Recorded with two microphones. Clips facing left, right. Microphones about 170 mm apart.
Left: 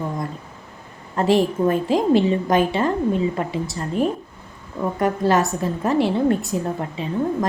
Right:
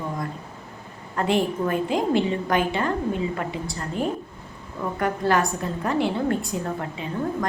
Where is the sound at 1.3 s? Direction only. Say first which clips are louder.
Left 5 dB; 25° left (ahead or behind).